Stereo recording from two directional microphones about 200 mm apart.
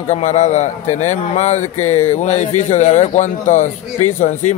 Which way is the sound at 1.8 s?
90° left.